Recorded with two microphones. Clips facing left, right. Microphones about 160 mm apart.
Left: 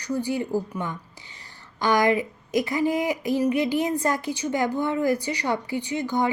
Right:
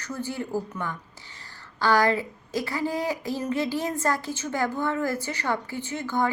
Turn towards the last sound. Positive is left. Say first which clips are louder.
# left 3 dB
turn(degrees=15)  # may be behind; listen again after turning